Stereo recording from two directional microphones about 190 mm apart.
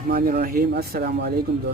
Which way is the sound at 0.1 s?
50° right (ahead or behind).